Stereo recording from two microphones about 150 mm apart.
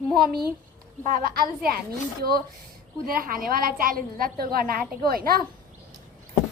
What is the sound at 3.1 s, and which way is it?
A woman's voice, 70° right (ahead or behind).